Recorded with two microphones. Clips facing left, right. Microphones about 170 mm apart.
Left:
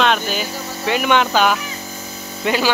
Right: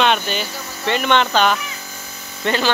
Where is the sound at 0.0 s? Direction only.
Centre (ahead or behind).